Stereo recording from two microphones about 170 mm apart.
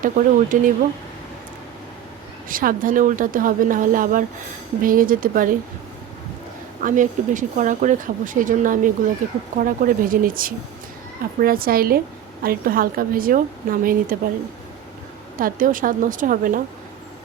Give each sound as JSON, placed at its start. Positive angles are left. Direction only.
{"t": 0.0, "sound": "speech", "side_deg": -50}
{"t": 2.5, "sound": "a woman's voice", "side_deg": -55}
{"t": 6.8, "sound": "a woman's voice", "side_deg": -50}
{"t": 15.4, "sound": "speech", "side_deg": -55}